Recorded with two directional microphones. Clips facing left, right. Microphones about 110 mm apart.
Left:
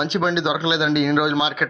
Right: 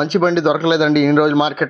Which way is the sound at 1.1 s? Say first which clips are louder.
Right 6 dB; 40° right (ahead or behind).